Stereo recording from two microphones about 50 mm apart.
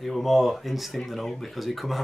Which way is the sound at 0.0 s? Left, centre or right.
Centre.